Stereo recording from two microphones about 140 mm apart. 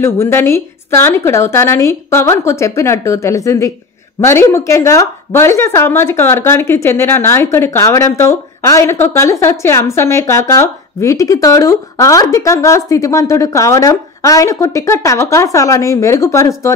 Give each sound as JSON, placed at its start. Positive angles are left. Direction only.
{"t": 0.0, "sound": "speech", "side_deg": 15}